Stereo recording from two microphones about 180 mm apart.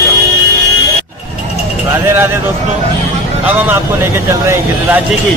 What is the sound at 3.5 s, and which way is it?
Speech, 10° right (ahead or behind).